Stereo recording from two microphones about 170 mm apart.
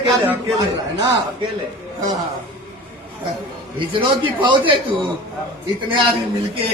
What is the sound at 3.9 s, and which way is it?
Speech, 30° right (ahead or behind).